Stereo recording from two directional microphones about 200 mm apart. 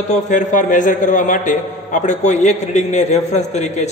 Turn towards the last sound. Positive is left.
turn(degrees=35)  # may be behind; listen again after turning